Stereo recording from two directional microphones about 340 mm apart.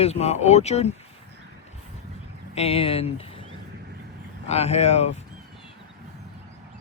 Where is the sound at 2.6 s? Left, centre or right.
Centre.